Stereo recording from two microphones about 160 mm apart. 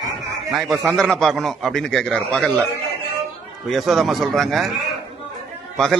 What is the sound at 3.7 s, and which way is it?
A man's voice, centre (ahead or behind).